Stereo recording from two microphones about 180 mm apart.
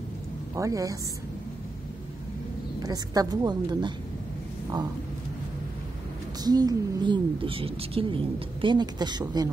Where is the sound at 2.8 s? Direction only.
20° right (ahead or behind).